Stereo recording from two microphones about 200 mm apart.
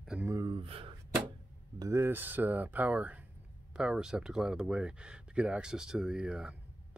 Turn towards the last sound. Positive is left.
turn(degrees=-5)  # may be behind; listen again after turning